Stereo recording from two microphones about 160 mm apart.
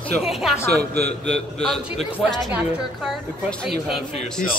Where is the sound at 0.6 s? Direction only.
85° right.